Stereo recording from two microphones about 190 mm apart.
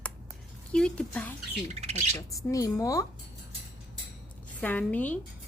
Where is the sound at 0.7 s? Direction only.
5° left (ahead or behind).